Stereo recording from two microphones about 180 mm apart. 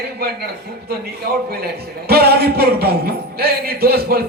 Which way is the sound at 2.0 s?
60° right (ahead or behind).